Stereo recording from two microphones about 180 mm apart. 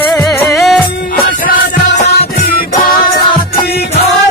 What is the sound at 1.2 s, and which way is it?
Music, 50° left (ahead or behind).